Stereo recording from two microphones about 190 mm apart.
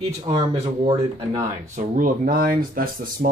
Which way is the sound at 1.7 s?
45° right (ahead or behind).